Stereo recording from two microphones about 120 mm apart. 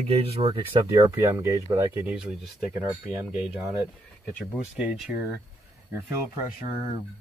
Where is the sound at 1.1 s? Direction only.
25° right (ahead or behind).